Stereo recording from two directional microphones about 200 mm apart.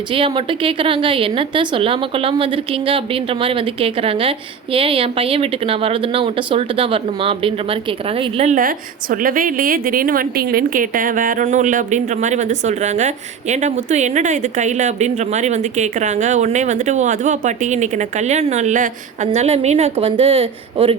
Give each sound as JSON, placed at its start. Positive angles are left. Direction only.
{"t": 0.1, "sound": "a woman's voice", "side_deg": -25}